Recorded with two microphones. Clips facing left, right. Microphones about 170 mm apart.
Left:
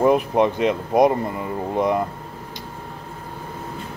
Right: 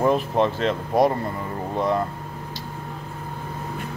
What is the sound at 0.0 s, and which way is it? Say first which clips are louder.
Speech: left 3 dB; 15° left (ahead or behind).